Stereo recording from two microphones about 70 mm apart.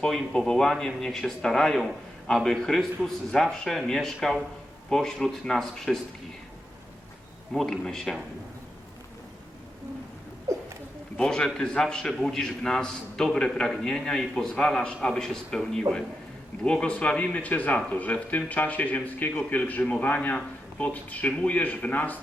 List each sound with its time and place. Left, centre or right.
0.0 s a man's voice: centre
7.5 s speech: centre
11.2 s a man's voice: centre